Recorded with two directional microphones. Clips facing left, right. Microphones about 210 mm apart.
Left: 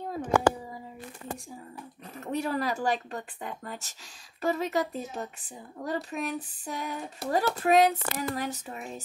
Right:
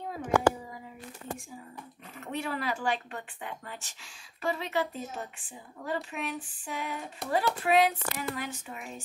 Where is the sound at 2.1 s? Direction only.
40° left (ahead or behind).